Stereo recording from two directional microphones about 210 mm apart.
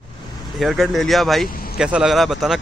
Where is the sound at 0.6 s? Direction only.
Centre (ahead or behind).